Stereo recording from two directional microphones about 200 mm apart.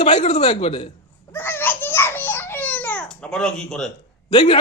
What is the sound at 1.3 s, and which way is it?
Babbling, 10° left (ahead or behind).